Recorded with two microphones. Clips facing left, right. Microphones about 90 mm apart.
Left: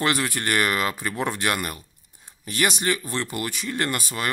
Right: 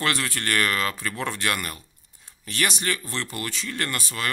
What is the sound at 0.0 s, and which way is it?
Speech, 20° left (ahead or behind).